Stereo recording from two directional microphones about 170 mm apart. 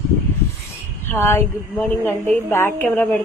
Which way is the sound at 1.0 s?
15° left (ahead or behind).